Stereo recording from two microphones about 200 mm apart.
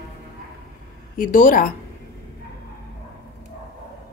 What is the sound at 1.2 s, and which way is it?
Speech, 45° left (ahead or behind).